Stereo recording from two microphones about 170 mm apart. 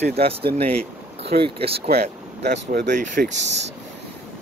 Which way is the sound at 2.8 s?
50° right (ahead or behind).